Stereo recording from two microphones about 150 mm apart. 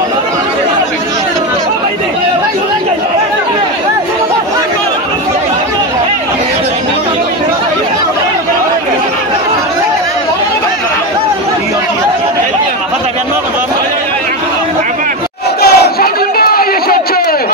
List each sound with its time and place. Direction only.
15.6 s crowd: 90° left